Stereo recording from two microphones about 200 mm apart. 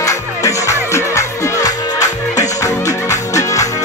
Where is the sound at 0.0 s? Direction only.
15° left (ahead or behind).